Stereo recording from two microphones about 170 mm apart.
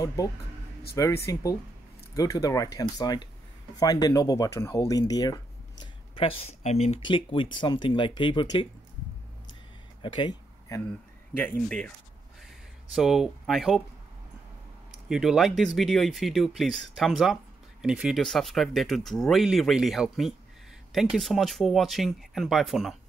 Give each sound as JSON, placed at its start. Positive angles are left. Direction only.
{"t": 0.0, "sound": "speech", "side_deg": 20}
{"t": 7.1, "sound": "speech", "side_deg": 30}
{"t": 10.0, "sound": "a sound", "side_deg": 25}
{"t": 11.3, "sound": "speech", "side_deg": 10}
{"t": 12.9, "sound": "speech", "side_deg": -5}
{"t": 15.0, "sound": "speech", "side_deg": 0}